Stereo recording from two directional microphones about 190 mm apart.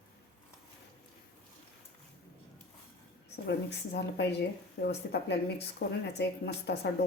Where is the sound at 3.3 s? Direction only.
60° left (ahead or behind).